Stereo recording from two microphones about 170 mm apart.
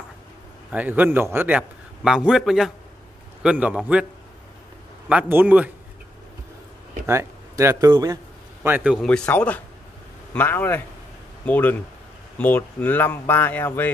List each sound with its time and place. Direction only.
0.7 s a man's voice: 10° right (ahead or behind)
5.1 s a man's voice: 10° right (ahead or behind)
7.1 s speech: 15° right (ahead or behind)
8.6 s speech: 5° right (ahead or behind); by 13.8 s 10° left (ahead or behind)